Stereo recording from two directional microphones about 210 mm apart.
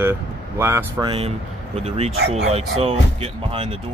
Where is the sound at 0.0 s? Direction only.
10° right (ahead or behind).